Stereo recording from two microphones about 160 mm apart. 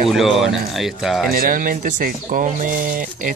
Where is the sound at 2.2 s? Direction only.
50° right (ahead or behind).